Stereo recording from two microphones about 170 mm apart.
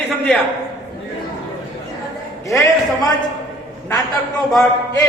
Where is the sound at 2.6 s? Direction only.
20° left (ahead or behind).